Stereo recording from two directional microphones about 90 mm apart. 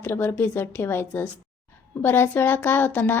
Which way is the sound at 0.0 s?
25° left (ahead or behind).